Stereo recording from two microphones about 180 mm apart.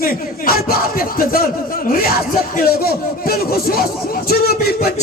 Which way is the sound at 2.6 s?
55° left (ahead or behind).